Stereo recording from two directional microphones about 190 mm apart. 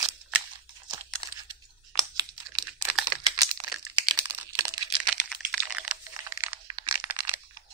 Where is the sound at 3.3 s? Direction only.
20° right (ahead or behind).